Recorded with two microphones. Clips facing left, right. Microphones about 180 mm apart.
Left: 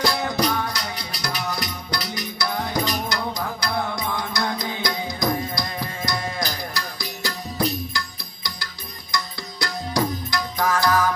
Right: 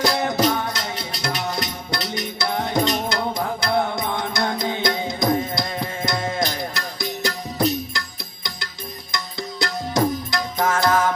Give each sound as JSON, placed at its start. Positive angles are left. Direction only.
{"t": 0.0, "sound": "music", "side_deg": -20}
{"t": 9.1, "sound": "music", "side_deg": -20}